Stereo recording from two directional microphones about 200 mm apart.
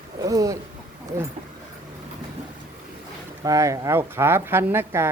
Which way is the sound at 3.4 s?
15° right (ahead or behind).